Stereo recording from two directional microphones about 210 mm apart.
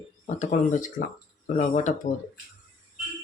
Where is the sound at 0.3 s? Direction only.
35° left (ahead or behind).